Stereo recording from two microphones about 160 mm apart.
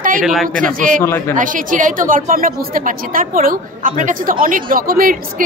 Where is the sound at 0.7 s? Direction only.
55° right (ahead or behind).